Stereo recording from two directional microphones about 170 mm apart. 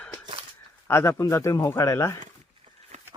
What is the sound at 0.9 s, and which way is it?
Speech, 15° left (ahead or behind).